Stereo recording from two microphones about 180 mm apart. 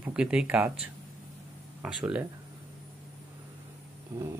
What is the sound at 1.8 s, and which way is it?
Speech, 5° right (ahead or behind).